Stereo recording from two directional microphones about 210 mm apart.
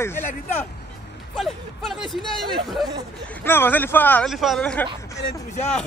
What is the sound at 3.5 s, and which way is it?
Speech, 10° left (ahead or behind).